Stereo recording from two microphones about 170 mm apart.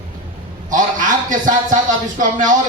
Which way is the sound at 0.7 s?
50° right (ahead or behind).